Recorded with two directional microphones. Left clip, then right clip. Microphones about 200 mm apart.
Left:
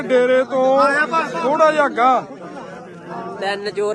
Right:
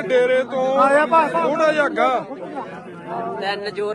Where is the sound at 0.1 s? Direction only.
60° left (ahead or behind).